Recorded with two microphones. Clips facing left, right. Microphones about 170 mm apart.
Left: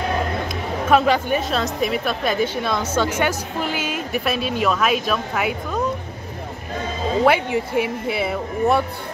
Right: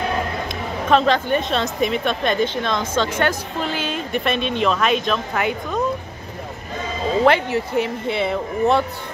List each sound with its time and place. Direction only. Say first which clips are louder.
0.5 s a woman's voice: even; 5° left (ahead or behind)
7.2 s a woman's voice: right 1 dB; 10° left (ahead or behind)